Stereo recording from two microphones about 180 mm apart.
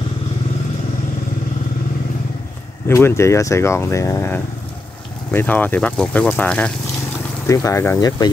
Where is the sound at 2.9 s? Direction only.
15° left (ahead or behind).